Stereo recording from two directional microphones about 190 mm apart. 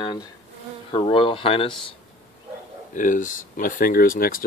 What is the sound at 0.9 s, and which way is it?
Speech, 30° left (ahead or behind).